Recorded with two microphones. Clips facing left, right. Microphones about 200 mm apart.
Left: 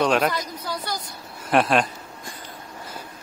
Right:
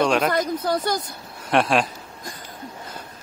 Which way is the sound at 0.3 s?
50° right (ahead or behind).